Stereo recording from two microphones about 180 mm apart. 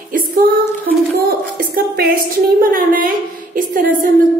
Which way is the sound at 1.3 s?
55° right (ahead or behind).